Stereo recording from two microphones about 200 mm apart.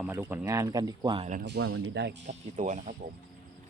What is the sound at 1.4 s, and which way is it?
Speech, 75° right (ahead or behind).